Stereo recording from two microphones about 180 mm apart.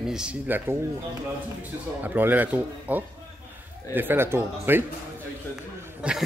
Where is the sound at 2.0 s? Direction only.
10° right (ahead or behind).